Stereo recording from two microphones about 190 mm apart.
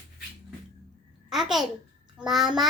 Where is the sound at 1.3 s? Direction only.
Centre (ahead or behind).